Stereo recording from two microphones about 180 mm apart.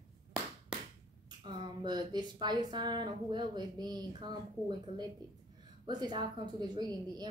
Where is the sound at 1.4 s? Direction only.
25° right (ahead or behind).